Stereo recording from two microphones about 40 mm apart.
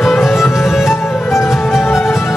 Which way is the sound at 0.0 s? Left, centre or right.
Centre.